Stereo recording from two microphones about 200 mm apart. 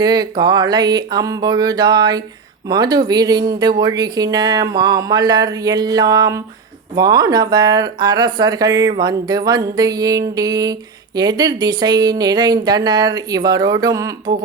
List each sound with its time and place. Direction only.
0.0 s speech: 20° right (ahead or behind)